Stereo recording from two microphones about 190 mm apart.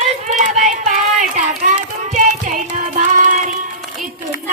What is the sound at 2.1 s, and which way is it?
Music, 40° right (ahead or behind).